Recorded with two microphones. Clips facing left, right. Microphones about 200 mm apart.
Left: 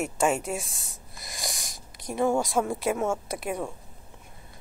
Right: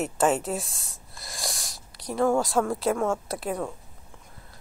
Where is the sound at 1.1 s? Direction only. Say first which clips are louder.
Right 1 dB; 20° left (ahead or behind).